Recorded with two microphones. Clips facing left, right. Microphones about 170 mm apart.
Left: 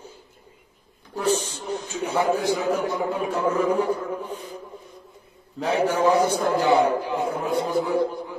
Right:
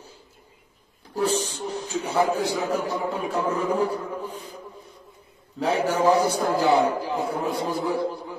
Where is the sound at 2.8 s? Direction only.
35° right (ahead or behind).